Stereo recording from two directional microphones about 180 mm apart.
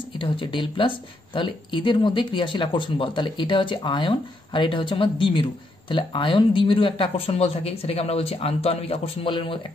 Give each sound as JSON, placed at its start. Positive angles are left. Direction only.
{"t": 0.2, "sound": "speech", "side_deg": 30}